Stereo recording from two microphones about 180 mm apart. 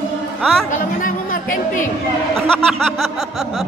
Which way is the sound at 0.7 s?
45° left (ahead or behind).